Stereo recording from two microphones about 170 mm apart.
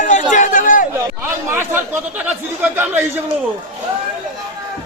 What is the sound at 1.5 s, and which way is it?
Speech, 15° right (ahead or behind).